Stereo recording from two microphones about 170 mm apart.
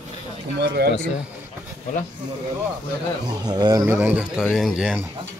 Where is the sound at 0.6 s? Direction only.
75° right (ahead or behind).